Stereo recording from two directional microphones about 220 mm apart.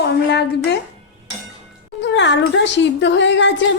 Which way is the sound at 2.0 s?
55° left (ahead or behind).